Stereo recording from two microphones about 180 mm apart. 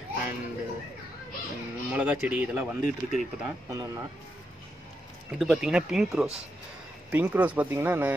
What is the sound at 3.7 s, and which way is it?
Speech, 20° right (ahead or behind).